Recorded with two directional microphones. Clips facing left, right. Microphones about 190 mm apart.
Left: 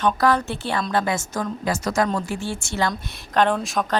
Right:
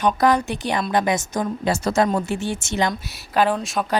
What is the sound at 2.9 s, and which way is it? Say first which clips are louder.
Speech: right 1 dB; 5° right (ahead or behind).